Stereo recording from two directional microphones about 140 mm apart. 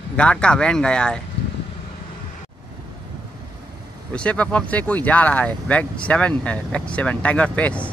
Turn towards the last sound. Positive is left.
turn(degrees=10)  # may be behind; listen again after turning